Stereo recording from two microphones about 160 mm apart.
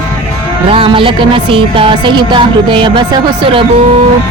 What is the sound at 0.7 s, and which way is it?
Speech, 35° right (ahead or behind).